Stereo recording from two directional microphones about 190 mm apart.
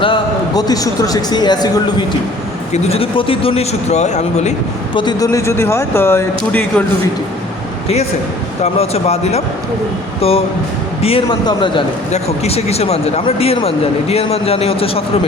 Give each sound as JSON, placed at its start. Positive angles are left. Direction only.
{"t": 0.0, "sound": "a man's voice", "side_deg": 25}
{"t": 2.7, "sound": "speech", "side_deg": 30}
{"t": 4.9, "sound": "speech", "side_deg": 20}
{"t": 8.6, "sound": "a man's voice", "side_deg": 35}